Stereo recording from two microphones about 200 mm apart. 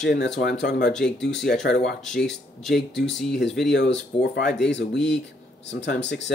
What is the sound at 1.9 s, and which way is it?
Speech, centre (ahead or behind).